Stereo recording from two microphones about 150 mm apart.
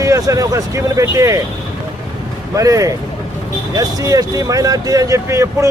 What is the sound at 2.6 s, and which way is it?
Speech, 20° right (ahead or behind).